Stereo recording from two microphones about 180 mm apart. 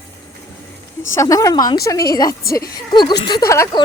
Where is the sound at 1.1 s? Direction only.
20° left (ahead or behind).